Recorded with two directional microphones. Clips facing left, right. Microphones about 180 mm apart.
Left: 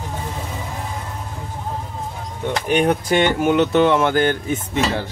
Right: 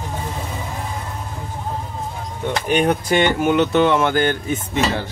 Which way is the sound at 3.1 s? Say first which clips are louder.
Even; 35° left (ahead or behind).